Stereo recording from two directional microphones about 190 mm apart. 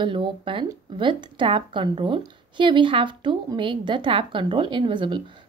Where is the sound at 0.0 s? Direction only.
25° right (ahead or behind).